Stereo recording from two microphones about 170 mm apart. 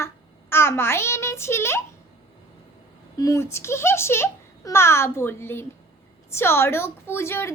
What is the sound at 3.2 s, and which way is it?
A child's voice, 20° left (ahead or behind).